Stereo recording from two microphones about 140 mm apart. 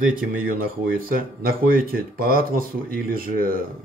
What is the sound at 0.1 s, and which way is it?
Speech, 90° right.